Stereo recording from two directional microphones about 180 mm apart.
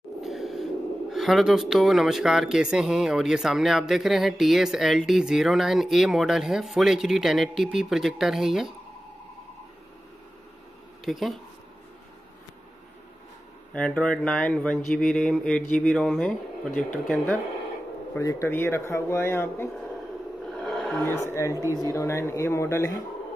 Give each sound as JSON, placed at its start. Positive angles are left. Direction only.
{"t": 0.2, "sound": "a sound", "side_deg": 0}
{"t": 1.1, "sound": "speech", "side_deg": 0}
{"t": 11.1, "sound": "speech", "side_deg": 0}
{"t": 13.7, "sound": "a man's voice", "side_deg": 5}
{"t": 20.6, "sound": "roar", "side_deg": 0}
{"t": 21.1, "sound": "a man's voice", "side_deg": 15}
{"t": 21.5, "sound": "speech", "side_deg": -15}
{"t": 21.9, "sound": "a man's voice", "side_deg": 15}